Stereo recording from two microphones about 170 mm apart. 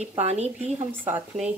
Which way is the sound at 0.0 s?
40° right (ahead or behind).